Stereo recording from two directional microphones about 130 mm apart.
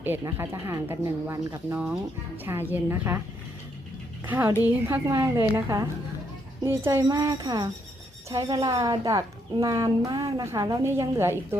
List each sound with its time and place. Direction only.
0.0 s speech: 15° right (ahead or behind)
4.3 s a woman's voice: 15° right (ahead or behind)